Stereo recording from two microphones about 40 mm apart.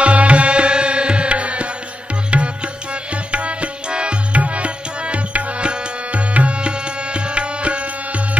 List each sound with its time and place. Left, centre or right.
0.0 s tabla: right
2.3 s music: right
4.4 s tabla: right